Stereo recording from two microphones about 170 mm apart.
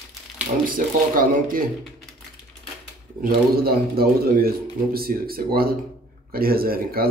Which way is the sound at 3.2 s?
60° right (ahead or behind).